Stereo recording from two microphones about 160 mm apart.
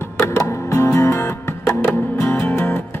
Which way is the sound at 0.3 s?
20° left (ahead or behind).